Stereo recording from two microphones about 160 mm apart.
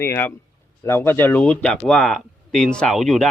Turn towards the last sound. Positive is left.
turn(degrees=0)  # may be behind; listen again after turning